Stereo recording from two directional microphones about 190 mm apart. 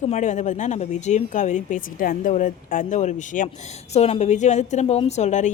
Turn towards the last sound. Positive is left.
turn(degrees=40)  # may be behind; listen again after turning